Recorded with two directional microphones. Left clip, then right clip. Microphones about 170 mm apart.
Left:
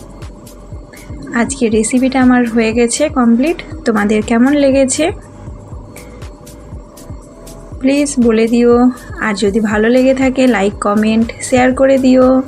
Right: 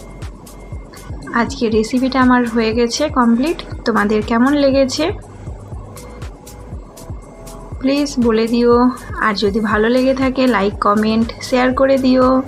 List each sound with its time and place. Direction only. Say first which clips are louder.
1.2 s a woman's voice: left 2 dB; 20° left (ahead or behind)
7.8 s a woman's voice: left 4 dB; 20° left (ahead or behind)